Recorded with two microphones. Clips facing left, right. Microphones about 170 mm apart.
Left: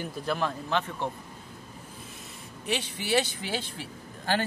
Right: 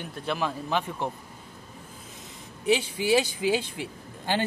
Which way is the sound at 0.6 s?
10° right (ahead or behind).